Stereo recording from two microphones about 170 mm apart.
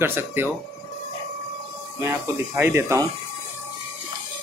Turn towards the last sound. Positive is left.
turn(degrees=-15)  # may be behind; listen again after turning